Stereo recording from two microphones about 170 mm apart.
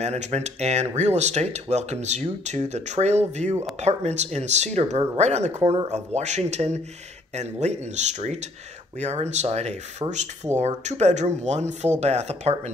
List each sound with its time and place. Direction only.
0.0 s speech: 40° right (ahead or behind)